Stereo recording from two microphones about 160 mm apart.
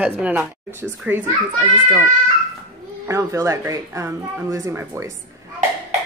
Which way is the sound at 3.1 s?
20° right (ahead or behind).